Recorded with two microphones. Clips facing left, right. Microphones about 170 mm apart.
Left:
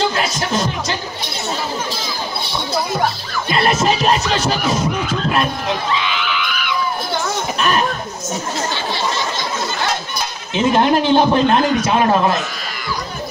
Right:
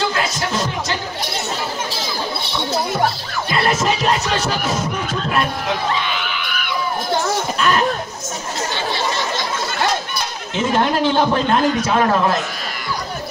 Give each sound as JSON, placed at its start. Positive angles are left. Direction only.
{"t": 3.5, "sound": "music", "side_deg": 20}
{"t": 5.9, "sound": "screaming", "side_deg": -50}
{"t": 10.5, "sound": "a man's voice", "side_deg": 20}